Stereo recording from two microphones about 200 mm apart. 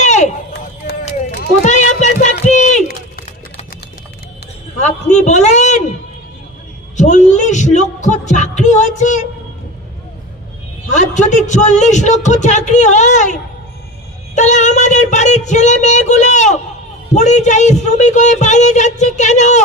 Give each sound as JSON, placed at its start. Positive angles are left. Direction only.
{"t": 0.0, "sound": "run", "side_deg": 35}
{"t": 1.6, "sound": "a sound", "side_deg": 35}
{"t": 4.7, "sound": "a man's voice", "side_deg": 35}
{"t": 7.0, "sound": "speech", "side_deg": 35}
{"t": 10.9, "sound": "speech", "side_deg": 35}